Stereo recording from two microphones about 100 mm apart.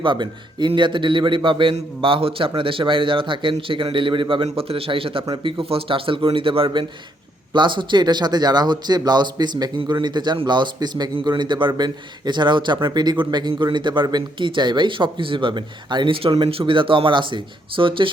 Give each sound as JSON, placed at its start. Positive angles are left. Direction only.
{"t": 0.0, "sound": "a man's voice", "side_deg": -50}
{"t": 4.4, "sound": "a man's voice", "side_deg": -75}
{"t": 7.5, "sound": "a man's voice", "side_deg": -50}